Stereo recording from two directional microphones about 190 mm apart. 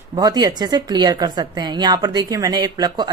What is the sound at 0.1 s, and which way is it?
A woman's voice, 20° right (ahead or behind).